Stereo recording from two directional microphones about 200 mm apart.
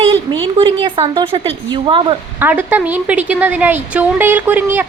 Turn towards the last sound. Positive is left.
turn(degrees=-10)  # may be behind; listen again after turning